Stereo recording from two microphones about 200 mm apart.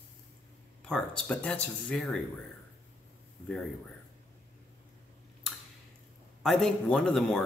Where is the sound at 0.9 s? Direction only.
5° left (ahead or behind).